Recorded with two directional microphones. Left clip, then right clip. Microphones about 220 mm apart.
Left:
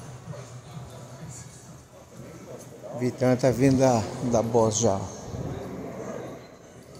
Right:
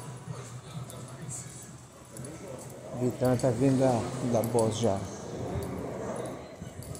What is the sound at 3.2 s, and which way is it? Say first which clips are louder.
Speech: left 5 dB; 20° left (ahead or behind).